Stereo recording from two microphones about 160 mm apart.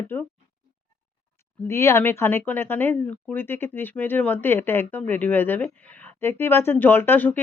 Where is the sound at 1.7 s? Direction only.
15° left (ahead or behind).